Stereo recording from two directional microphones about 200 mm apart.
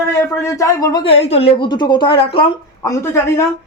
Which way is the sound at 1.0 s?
30° left (ahead or behind).